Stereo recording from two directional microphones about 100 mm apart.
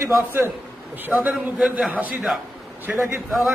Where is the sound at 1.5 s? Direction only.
5° right (ahead or behind).